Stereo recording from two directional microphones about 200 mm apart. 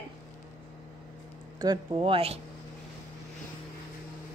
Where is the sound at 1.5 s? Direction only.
20° right (ahead or behind).